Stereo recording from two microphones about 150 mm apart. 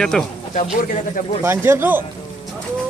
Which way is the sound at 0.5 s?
55° left (ahead or behind).